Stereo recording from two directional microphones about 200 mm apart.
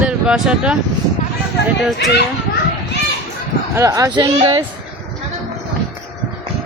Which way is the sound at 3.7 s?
15° right (ahead or behind).